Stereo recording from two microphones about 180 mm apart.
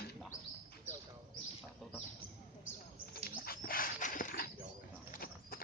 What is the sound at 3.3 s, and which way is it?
Wild animals, 55° left (ahead or behind).